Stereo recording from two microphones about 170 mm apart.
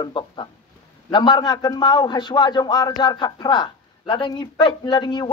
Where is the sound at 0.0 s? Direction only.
25° left (ahead or behind).